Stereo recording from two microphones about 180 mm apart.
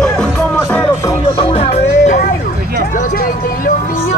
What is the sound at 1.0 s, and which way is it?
Music, 30° left (ahead or behind).